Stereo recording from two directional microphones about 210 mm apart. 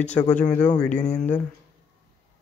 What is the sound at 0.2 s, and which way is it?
Speech, 10° left (ahead or behind).